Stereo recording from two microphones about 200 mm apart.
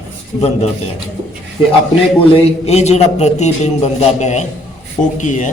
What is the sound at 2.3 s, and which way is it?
A man's voice, 30° left (ahead or behind).